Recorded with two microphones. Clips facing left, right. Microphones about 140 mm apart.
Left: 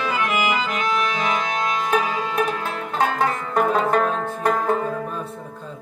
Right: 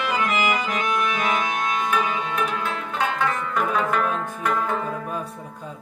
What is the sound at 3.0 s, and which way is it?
Music, 35° left (ahead or behind).